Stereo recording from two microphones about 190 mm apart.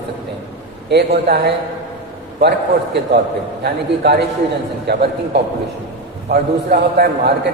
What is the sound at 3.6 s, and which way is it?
A man's voice, 60° right (ahead or behind).